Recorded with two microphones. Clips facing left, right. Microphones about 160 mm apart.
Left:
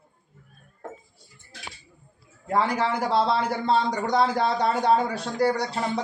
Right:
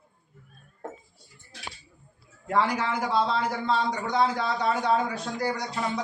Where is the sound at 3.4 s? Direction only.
35° left (ahead or behind).